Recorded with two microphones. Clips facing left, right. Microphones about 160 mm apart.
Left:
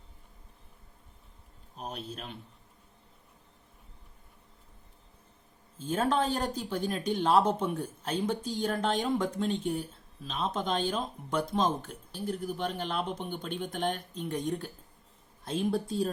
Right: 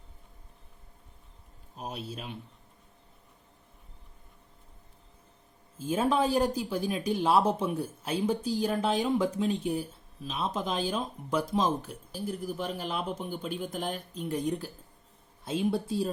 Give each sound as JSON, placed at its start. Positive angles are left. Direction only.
{"t": 1.7, "sound": "speech", "side_deg": -10}
{"t": 5.8, "sound": "speech", "side_deg": -10}